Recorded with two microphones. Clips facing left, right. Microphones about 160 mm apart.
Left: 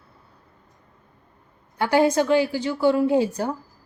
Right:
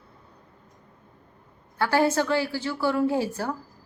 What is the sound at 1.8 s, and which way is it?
A woman's voice, 15° left (ahead or behind).